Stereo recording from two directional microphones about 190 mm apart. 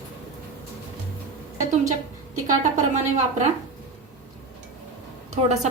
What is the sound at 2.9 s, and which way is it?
Speech, 40° right (ahead or behind).